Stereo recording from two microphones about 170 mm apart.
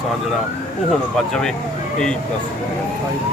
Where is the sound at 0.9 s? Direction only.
5° left (ahead or behind).